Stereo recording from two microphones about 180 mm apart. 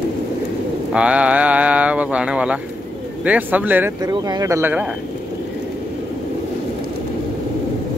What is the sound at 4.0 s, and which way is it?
Speech, 20° right (ahead or behind).